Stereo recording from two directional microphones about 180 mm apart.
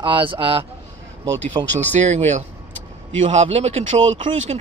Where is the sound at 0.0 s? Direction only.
25° right (ahead or behind).